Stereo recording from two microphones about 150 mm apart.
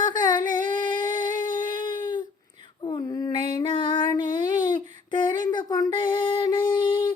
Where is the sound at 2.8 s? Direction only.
35° left (ahead or behind).